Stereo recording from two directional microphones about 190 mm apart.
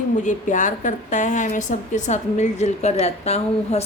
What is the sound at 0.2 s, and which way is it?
A woman's voice, 40° left (ahead or behind).